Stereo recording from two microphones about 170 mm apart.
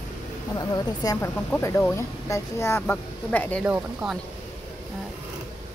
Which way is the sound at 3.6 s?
5° right (ahead or behind).